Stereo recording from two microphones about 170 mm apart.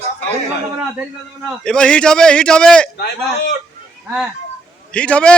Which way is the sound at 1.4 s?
5° left (ahead or behind).